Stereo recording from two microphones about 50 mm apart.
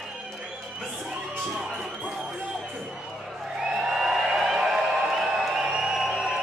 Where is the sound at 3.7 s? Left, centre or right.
Centre.